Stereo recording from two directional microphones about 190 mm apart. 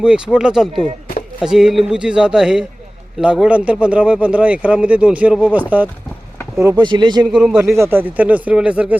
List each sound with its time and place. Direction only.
0.0 s a man's voice: 5° right (ahead or behind)
6.6 s speech: 20° right (ahead or behind)
7.3 s a man's voice: 5° right (ahead or behind)